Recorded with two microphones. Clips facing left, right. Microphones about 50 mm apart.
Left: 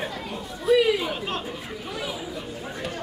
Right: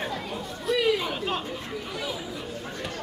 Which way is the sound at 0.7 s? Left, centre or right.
Centre.